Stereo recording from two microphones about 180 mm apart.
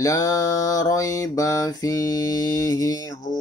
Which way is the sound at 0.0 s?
20° left (ahead or behind).